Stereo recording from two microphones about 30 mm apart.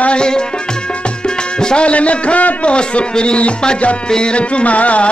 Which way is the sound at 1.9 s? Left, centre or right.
Left.